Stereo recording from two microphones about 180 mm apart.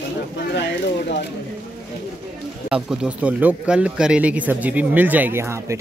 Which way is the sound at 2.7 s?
5° right (ahead or behind).